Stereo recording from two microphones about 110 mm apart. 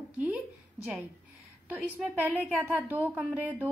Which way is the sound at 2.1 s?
15° right (ahead or behind).